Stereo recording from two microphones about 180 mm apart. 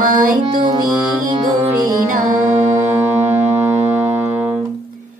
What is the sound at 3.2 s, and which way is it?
Music, 10° right (ahead or behind).